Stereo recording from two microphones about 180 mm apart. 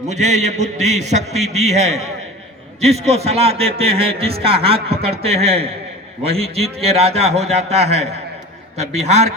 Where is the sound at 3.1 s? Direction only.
35° right (ahead or behind).